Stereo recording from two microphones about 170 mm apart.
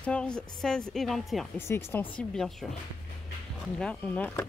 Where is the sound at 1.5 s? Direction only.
15° left (ahead or behind).